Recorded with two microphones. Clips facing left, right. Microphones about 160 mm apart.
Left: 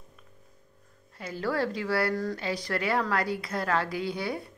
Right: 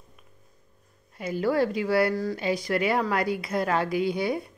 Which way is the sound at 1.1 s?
15° right (ahead or behind).